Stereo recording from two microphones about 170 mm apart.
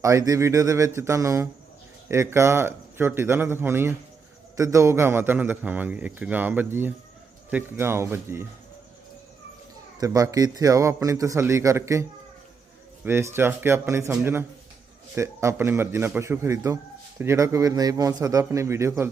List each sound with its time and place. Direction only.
0.0 s a man's voice: 20° right (ahead or behind)
10.0 s speech: 20° right (ahead or behind)
13.1 s a man's voice: 15° right (ahead or behind)